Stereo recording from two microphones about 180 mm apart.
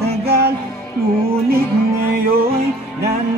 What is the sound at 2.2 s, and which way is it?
Music, 55° right (ahead or behind).